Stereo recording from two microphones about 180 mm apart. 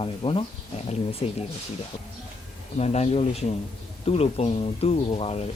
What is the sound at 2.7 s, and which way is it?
Speech, 40° left (ahead or behind).